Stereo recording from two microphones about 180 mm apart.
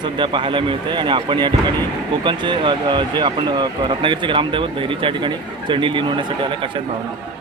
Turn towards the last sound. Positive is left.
turn(degrees=-30)  # may be behind; listen again after turning